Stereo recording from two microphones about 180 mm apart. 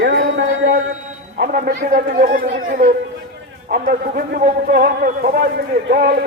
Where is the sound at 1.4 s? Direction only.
55° right (ahead or behind).